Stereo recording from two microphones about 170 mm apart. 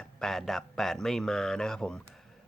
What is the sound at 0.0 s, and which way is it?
Speech, 5° left (ahead or behind).